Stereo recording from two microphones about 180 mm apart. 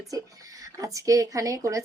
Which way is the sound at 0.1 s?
20° right (ahead or behind).